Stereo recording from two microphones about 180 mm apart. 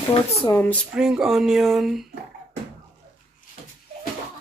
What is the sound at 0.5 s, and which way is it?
Speech, 10° left (ahead or behind).